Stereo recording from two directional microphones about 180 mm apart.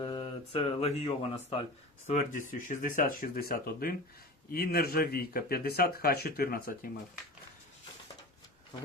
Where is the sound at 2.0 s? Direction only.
40° left (ahead or behind).